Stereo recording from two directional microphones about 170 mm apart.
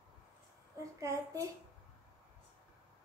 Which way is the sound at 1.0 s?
20° right (ahead or behind).